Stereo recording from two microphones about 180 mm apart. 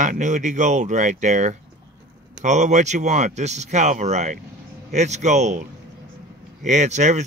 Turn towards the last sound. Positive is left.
turn(degrees=-40)  # may be behind; listen again after turning